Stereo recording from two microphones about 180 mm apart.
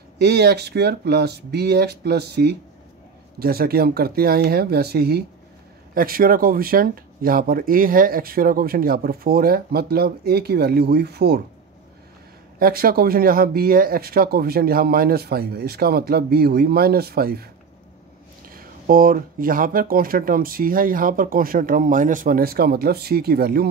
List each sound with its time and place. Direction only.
0.2 s speech: 65° right (ahead or behind)
12.5 s speech: 55° right (ahead or behind)
18.5 s speech: 50° right (ahead or behind)